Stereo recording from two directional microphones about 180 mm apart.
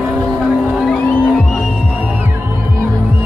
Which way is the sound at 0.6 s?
Centre (ahead or behind).